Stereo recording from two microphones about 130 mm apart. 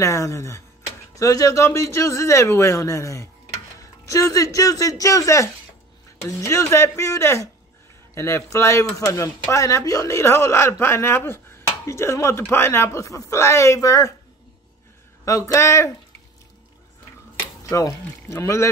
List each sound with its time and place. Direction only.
0.0 s speech: 25° left (ahead or behind)
15.2 s speech: 25° left (ahead or behind)
17.6 s speech: 25° left (ahead or behind)